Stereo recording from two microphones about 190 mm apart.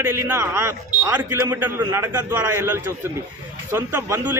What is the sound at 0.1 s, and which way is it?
A man's voice, 15° right (ahead or behind).